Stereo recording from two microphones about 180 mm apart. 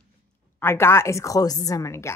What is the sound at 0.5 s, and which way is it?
Speech, 15° left (ahead or behind).